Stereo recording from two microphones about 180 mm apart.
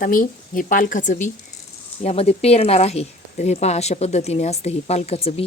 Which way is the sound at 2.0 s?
35° left (ahead or behind).